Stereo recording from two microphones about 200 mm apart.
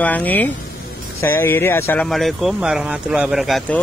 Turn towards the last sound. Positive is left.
turn(degrees=0)  # may be behind; listen again after turning